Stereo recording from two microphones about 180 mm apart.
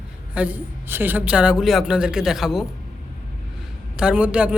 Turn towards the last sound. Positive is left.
turn(degrees=-5)  # may be behind; listen again after turning